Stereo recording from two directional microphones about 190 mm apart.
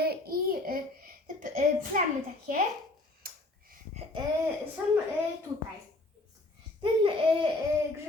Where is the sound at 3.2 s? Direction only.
50° right (ahead or behind).